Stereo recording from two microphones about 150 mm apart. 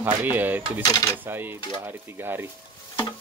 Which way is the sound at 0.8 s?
25° left (ahead or behind).